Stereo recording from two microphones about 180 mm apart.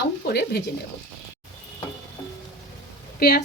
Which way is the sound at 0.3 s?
65° left (ahead or behind).